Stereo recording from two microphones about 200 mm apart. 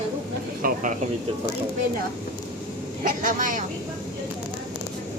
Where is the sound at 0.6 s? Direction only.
45° right (ahead or behind).